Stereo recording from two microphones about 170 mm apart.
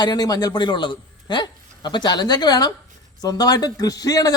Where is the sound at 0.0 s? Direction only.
25° left (ahead or behind).